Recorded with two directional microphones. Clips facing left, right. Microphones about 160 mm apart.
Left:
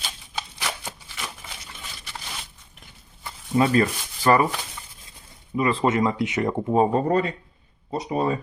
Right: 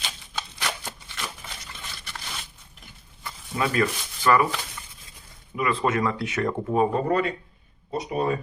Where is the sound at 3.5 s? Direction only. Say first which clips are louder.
Left 5 dB; 35° left (ahead or behind).